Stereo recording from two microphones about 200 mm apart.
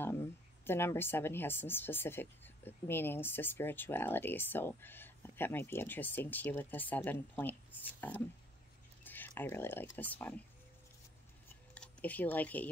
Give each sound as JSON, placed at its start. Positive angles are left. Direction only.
{"t": 0.0, "sound": "speech", "side_deg": 10}
{"t": 9.0, "sound": "a sound", "side_deg": 10}
{"t": 9.9, "sound": "speech", "side_deg": 10}
{"t": 11.7, "sound": "speech", "side_deg": 5}